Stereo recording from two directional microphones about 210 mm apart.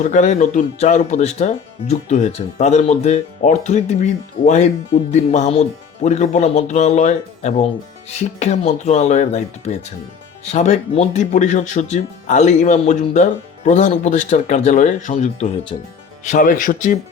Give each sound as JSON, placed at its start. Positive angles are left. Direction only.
{"t": 0.0, "sound": "speech", "side_deg": 35}